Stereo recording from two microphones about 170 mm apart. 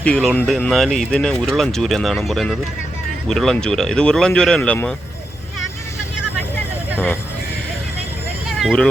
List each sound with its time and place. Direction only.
0.0 s speech: 5° left (ahead or behind)
8.4 s vehicle: centre (ahead or behind)